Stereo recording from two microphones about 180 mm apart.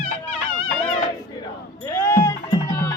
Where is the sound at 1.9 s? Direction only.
15° left (ahead or behind).